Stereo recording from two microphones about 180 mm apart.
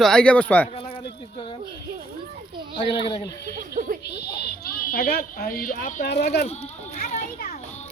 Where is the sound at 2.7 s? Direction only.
25° left (ahead or behind).